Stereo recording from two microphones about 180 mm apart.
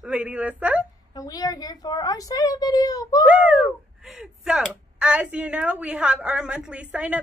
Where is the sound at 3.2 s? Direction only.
5° right (ahead or behind).